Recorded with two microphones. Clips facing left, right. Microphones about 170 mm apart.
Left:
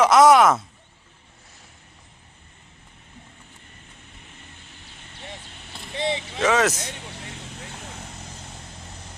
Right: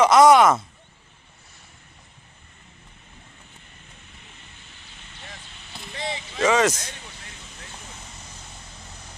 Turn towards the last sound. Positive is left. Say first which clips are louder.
# left 5 dB
turn(degrees=25)  # may be behind; listen again after turning